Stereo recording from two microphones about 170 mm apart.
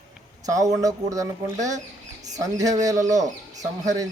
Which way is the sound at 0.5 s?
20° right (ahead or behind).